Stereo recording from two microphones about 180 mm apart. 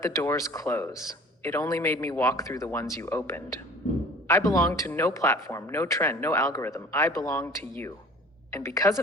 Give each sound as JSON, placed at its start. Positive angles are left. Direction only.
{"t": 0.0, "sound": "a woman's voice", "side_deg": 15}